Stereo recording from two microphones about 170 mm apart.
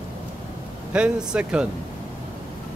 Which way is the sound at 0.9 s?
5° right (ahead or behind).